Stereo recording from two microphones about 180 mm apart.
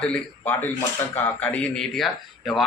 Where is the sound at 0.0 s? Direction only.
10° left (ahead or behind).